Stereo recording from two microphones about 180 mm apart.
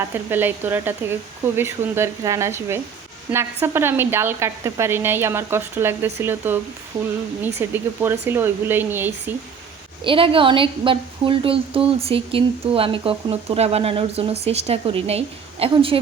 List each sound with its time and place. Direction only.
0.0 s speech: 10° right (ahead or behind)
10.0 s a woman's voice: 30° right (ahead or behind)